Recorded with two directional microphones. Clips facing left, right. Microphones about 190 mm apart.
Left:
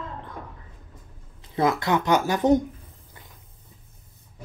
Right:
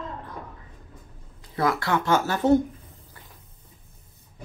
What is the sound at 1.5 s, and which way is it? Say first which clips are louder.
Speech: left 2 dB; 20° left (ahead or behind).